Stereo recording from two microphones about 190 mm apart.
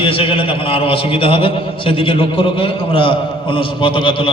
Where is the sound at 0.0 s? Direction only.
30° left (ahead or behind).